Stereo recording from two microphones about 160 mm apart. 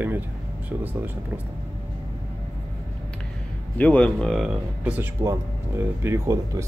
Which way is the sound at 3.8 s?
5° left (ahead or behind).